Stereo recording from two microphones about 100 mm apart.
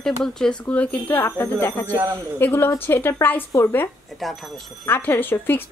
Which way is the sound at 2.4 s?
25° left (ahead or behind).